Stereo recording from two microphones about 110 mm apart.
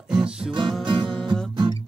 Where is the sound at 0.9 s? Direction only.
50° right (ahead or behind).